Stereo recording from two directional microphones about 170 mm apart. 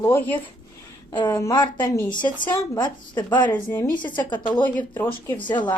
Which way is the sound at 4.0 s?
25° left (ahead or behind).